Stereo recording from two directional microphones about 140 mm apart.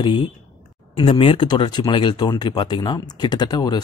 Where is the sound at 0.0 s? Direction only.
35° left (ahead or behind).